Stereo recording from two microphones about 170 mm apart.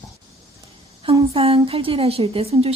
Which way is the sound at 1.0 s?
35° right (ahead or behind).